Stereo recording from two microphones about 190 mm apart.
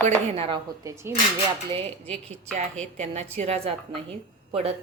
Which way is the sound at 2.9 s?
35° right (ahead or behind).